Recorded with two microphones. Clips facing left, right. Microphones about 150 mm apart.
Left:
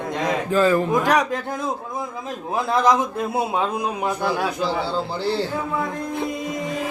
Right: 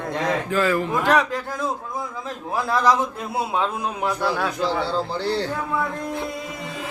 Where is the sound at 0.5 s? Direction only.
30° left (ahead or behind).